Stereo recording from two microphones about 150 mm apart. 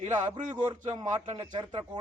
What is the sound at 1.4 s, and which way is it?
Speech, 30° right (ahead or behind).